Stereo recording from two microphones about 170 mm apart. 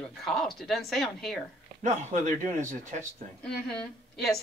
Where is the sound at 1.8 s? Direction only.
45° right (ahead or behind).